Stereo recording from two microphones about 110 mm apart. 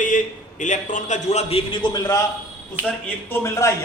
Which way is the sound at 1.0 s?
90° left.